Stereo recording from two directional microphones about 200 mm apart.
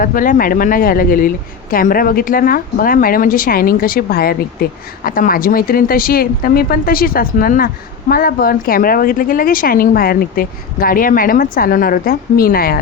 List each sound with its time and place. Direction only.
0.0 s speech: 45° left (ahead or behind)